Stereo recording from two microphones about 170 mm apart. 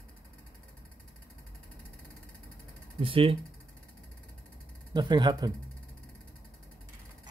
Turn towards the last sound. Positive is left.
turn(degrees=-25)  # may be behind; listen again after turning